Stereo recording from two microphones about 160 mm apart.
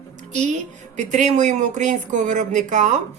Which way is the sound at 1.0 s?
50° right (ahead or behind).